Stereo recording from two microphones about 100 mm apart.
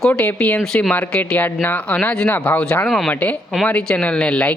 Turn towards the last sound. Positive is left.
turn(degrees=10)  # may be behind; listen again after turning